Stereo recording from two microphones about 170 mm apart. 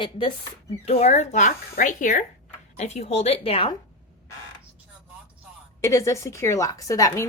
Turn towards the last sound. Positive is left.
turn(degrees=20)  # may be behind; listen again after turning